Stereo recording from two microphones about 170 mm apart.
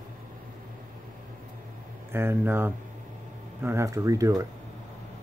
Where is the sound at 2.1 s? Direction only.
15° right (ahead or behind).